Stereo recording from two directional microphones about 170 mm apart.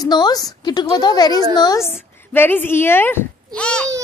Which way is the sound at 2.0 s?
10° left (ahead or behind).